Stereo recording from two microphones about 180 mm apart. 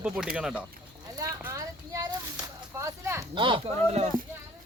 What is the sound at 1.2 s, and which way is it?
Speech, 15° right (ahead or behind).